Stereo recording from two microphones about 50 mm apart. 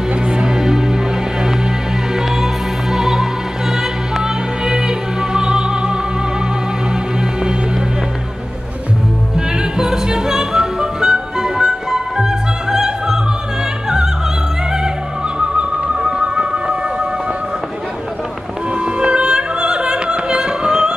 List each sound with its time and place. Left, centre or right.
0.3 s music: centre
2.1 s music: centre
9.6 s music: centre
15.3 s music: centre
18.9 s music: centre